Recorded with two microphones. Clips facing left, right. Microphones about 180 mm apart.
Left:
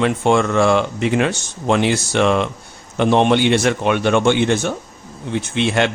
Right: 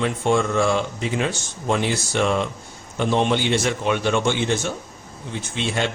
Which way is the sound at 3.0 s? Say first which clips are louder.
Left 6 dB; 65° left (ahead or behind).